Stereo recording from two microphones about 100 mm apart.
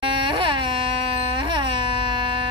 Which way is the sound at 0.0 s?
55° right (ahead or behind).